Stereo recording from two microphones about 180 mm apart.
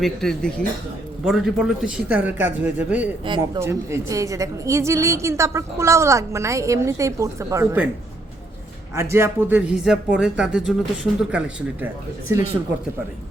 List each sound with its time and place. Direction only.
0.0 s a woman's voice: 5° left (ahead or behind)
3.2 s speech: 25° right (ahead or behind)
3.6 s a woman's voice: 15° right (ahead or behind)
9.0 s a woman's voice: 15° right (ahead or behind)